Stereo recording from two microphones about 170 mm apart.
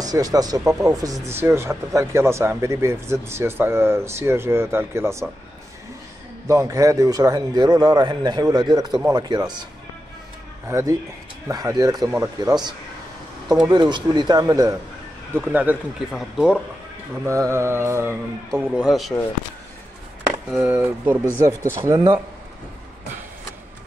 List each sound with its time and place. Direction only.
0.0 s speech: 20° right (ahead or behind)
6.4 s speech: 20° right (ahead or behind)
10.7 s speech: 20° right (ahead or behind)
15.3 s speech: 10° right (ahead or behind)
17.3 s speech: 15° right (ahead or behind); by 19.1 s centre (ahead or behind)
20.5 s speech: 10° right (ahead or behind)